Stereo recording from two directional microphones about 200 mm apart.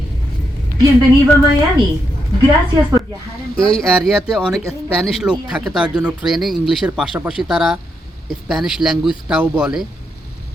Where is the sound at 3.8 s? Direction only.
Centre (ahead or behind).